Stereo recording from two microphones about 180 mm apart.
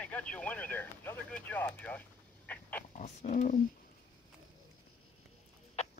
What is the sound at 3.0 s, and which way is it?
Speech, 45° left (ahead or behind).